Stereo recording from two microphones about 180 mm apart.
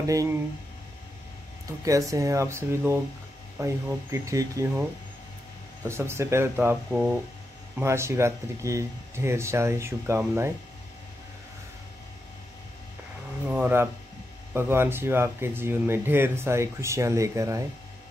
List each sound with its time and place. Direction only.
0.0 s speech: 20° right (ahead or behind)
1.7 s speech: 20° right (ahead or behind)
5.9 s speech: 15° right (ahead or behind)
13.5 s speech: 10° right (ahead or behind)